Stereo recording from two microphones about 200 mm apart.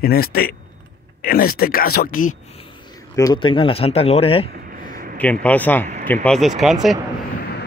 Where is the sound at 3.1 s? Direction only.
20° left (ahead or behind).